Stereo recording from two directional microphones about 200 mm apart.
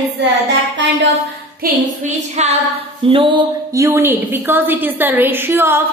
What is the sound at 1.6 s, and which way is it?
Speech, 35° right (ahead or behind).